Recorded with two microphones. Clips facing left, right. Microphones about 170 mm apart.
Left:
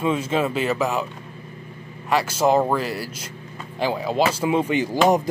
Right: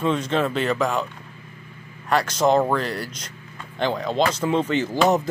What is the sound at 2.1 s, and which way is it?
A man's voice, 5° left (ahead or behind).